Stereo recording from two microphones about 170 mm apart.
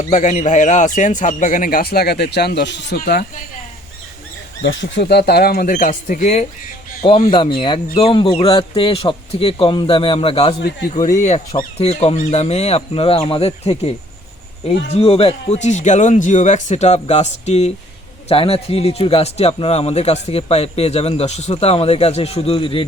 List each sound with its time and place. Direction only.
0.0 s a man's voice: 45° left (ahead or behind); by 3.0 s 90° left
3.1 s speech: 65° left (ahead or behind)
4.6 s speech: 90° left; by 5.9 s 55° left (ahead or behind)
5.9 s a man's voice: 40° left (ahead or behind)
15.0 s a man's voice: 35° left (ahead or behind)